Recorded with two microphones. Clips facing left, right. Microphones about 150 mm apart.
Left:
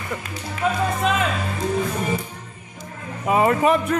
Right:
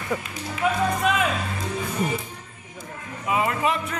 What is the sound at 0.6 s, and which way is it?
Music, 5° right (ahead or behind).